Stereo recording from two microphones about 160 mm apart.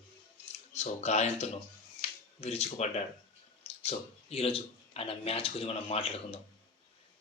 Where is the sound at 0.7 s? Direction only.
45° left (ahead or behind).